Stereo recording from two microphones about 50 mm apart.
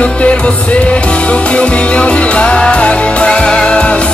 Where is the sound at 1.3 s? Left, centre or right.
Left.